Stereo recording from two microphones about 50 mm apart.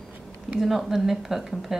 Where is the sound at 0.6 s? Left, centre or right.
Centre.